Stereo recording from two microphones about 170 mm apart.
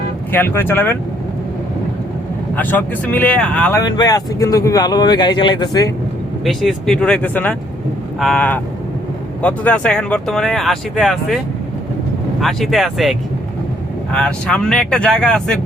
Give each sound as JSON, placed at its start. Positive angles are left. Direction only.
{"t": 0.3, "sound": "speech", "side_deg": 10}
{"t": 2.6, "sound": "speech", "side_deg": 10}
{"t": 3.8, "sound": "speech", "side_deg": 25}
{"t": 6.4, "sound": "speech", "side_deg": 0}
{"t": 12.4, "sound": "speech", "side_deg": 0}